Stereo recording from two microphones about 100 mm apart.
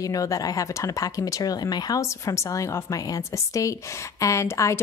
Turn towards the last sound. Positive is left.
turn(degrees=30)  # may be behind; listen again after turning